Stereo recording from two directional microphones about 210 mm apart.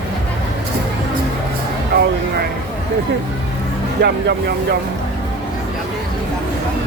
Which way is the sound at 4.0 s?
50° right (ahead or behind).